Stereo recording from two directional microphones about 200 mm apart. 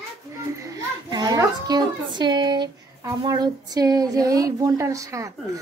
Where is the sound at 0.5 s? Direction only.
15° right (ahead or behind).